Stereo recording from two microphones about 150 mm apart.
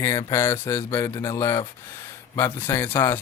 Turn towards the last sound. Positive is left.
turn(degrees=15)  # may be behind; listen again after turning